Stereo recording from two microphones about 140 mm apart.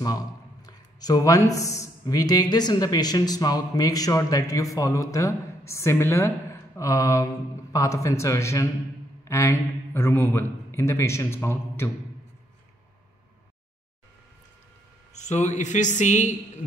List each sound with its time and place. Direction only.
0.7 s a man's voice: 30° left (ahead or behind)
15.1 s speech: 55° left (ahead or behind)